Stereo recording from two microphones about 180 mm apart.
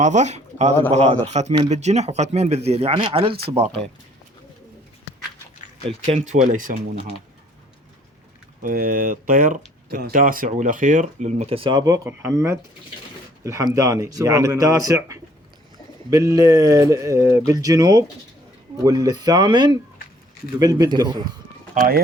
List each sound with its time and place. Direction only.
0.0 s speech: 40° right (ahead or behind)
6.1 s speech: 40° right (ahead or behind)
8.6 s speech: 50° right (ahead or behind); by 21.3 s 20° right (ahead or behind)
21.8 s speech: 55° right (ahead or behind)